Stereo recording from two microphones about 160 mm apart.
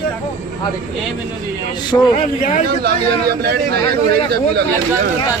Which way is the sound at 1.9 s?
25° left (ahead or behind).